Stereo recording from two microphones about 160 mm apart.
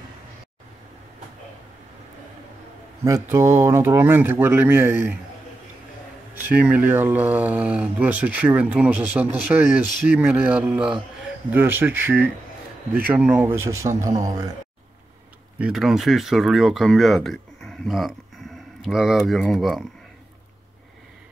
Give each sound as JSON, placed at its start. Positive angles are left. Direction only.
{"t": 3.0, "sound": "speech", "side_deg": -15}
{"t": 6.5, "sound": "speech", "side_deg": -10}
{"t": 15.6, "sound": "speech", "side_deg": 0}